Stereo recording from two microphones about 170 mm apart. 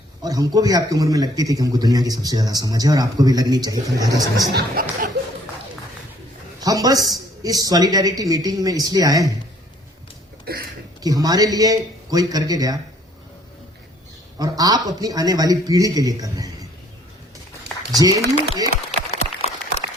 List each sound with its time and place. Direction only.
0.2 s speech: 20° right (ahead or behind)
4.5 s speech: 55° right (ahead or behind)
6.6 s speech: 20° right (ahead or behind)
10.5 s speech: 65° right (ahead or behind)
11.0 s speech: 20° right (ahead or behind)
14.3 s speech: 20° right (ahead or behind)
17.9 s speech: 20° right (ahead or behind)
18.9 s applause: 40° left (ahead or behind)